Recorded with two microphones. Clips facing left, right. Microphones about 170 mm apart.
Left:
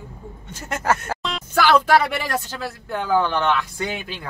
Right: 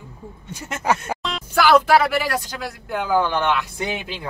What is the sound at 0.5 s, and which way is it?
Speech, 15° right (ahead or behind).